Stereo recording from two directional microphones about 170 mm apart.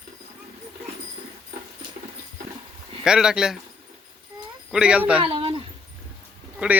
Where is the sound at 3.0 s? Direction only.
5° right (ahead or behind).